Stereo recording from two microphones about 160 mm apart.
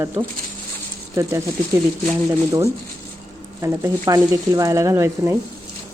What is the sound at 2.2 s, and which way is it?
Speech, 20° right (ahead or behind).